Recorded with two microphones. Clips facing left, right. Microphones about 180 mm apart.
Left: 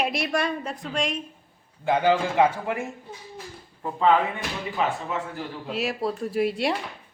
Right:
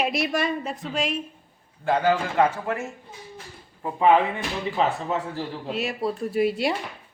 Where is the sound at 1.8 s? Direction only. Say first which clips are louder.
Left 1 dB; 10° left (ahead or behind).